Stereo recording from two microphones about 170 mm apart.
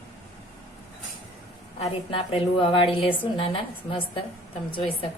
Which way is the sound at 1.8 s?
30° left (ahead or behind).